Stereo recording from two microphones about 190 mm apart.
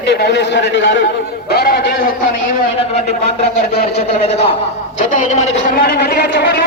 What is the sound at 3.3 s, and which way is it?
Speech, 35° left (ahead or behind).